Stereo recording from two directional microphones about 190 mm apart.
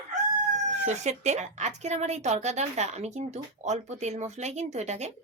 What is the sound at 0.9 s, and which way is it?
A woman's voice, 35° right (ahead or behind).